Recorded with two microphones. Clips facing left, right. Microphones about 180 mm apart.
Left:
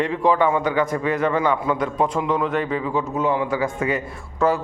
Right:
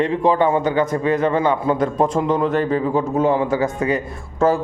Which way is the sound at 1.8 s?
40° right (ahead or behind).